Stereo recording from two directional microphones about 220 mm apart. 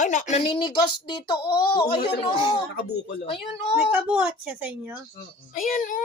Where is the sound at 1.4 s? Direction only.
45° left (ahead or behind).